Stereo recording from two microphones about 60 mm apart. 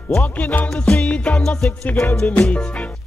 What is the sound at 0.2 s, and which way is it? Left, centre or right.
Speech, left.